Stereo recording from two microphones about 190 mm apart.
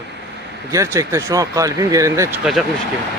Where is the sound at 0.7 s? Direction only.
15° right (ahead or behind).